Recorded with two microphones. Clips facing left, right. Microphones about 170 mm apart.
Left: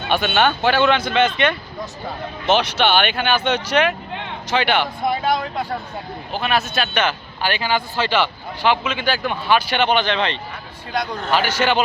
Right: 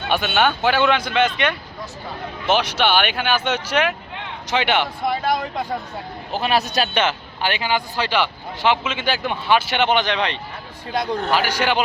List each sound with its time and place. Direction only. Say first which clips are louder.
0.1 s speech: left 1 dB; 5° right (ahead or behind)
4.4 s a man's voice: left 1 dB; 20° right (ahead or behind)
6.3 s a man's voice: right 1 dB; 35° right (ahead or behind); by 10.4 s 10° right (ahead or behind)
10.9 s a man's voice: right 2 dB; 25° right (ahead or behind)
11.3 s speech: left 4 dB; 10° right (ahead or behind)